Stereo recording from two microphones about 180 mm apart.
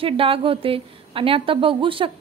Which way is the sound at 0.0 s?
30° right (ahead or behind).